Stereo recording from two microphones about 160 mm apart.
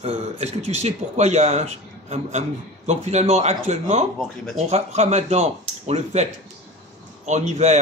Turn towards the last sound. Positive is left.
turn(degrees=-45)  # may be behind; listen again after turning